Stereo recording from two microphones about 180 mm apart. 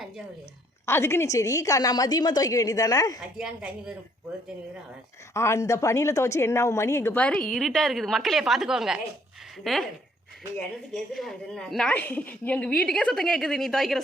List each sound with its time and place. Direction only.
0.9 s a woman's voice: 15° left (ahead or behind)
3.3 s a woman's voice: 5° right (ahead or behind)
5.3 s a woman's voice: 15° left (ahead or behind); by 9.8 s centre (ahead or behind)
10.9 s a woman's voice: centre (ahead or behind)